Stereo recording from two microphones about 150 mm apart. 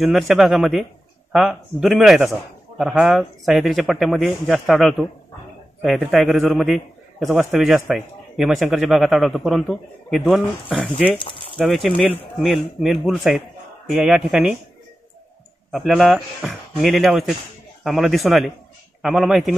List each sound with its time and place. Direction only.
0.0 s a man's voice: centre (ahead or behind)
6.1 s a man's voice: centre (ahead or behind)
11.1 s speech: 35° left (ahead or behind)
11.5 s a man's voice: centre (ahead or behind)
15.7 s a man's voice: 5° right (ahead or behind)